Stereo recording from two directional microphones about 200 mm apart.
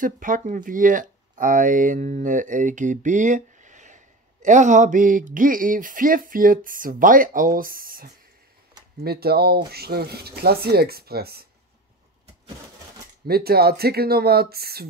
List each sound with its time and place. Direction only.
0.0 s speech: 40° right (ahead or behind)
13.3 s speech: 50° right (ahead or behind)